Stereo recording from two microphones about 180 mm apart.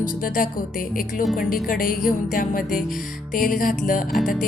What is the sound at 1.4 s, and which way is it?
Speech, 50° left (ahead or behind).